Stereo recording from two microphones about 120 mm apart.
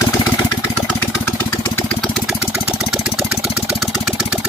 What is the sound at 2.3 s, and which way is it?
Engine, 15° right (ahead or behind).